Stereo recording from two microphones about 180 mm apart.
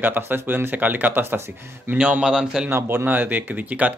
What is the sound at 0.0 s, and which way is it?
A man's voice, 10° right (ahead or behind).